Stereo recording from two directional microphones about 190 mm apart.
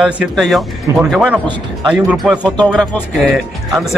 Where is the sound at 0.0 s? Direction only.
Centre (ahead or behind).